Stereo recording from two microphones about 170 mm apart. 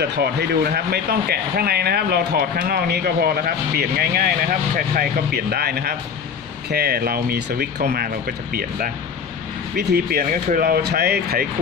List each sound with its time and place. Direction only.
0.0 s speech: 70° right (ahead or behind)